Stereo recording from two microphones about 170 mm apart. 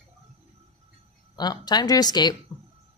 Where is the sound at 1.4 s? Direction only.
25° left (ahead or behind).